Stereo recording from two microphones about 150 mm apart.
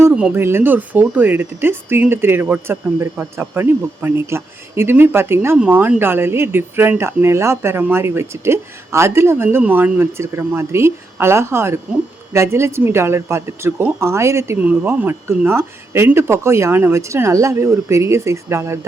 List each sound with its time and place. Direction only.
0.1 s speech: 10° right (ahead or behind)